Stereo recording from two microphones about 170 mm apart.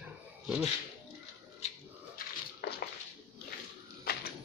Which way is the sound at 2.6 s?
65° left (ahead or behind).